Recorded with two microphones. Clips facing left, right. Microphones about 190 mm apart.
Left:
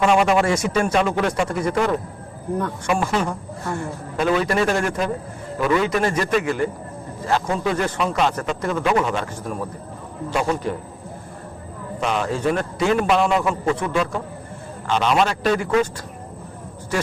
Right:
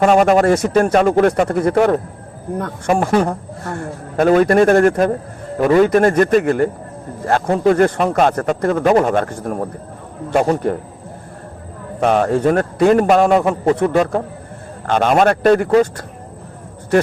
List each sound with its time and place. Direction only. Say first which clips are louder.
0.0 s speech: right 5 dB; 45° right (ahead or behind)
2.8 s speech: right 8 dB; 40° right (ahead or behind)
10.5 s a man's voice: right 5 dB; 40° right (ahead or behind)
11.9 s speech: right 8 dB; 50° right (ahead or behind)